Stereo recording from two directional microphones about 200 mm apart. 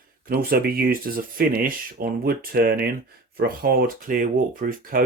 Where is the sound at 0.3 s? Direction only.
50° right (ahead or behind).